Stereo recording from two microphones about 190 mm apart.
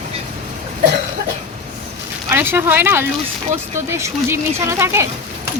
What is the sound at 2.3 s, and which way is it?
Speech, 10° right (ahead or behind).